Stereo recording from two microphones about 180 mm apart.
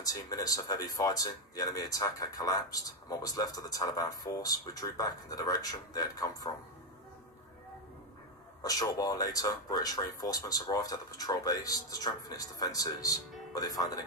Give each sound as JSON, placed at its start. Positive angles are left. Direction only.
{"t": 0.0, "sound": "speech", "side_deg": 20}
{"t": 8.6, "sound": "speech", "side_deg": 20}